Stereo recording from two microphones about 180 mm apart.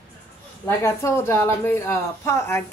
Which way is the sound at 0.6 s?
15° left (ahead or behind).